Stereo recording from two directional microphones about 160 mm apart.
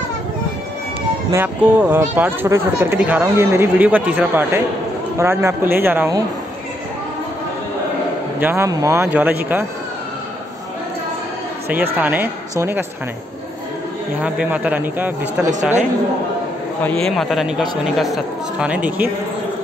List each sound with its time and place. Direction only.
1.3 s speech: 10° right (ahead or behind)
8.4 s speech: 15° right (ahead or behind)
11.7 s speech: 10° right (ahead or behind)
14.2 s speech: 10° right (ahead or behind)
16.8 s speech: 5° left (ahead or behind)